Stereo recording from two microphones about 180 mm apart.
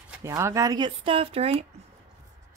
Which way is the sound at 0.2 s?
15° right (ahead or behind).